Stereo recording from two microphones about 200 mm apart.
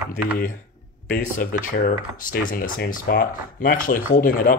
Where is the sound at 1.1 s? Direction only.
45° left (ahead or behind).